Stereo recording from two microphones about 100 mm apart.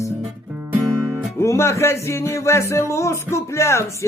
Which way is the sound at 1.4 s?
25° left (ahead or behind).